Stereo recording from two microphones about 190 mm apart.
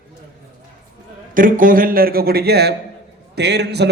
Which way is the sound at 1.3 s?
45° right (ahead or behind).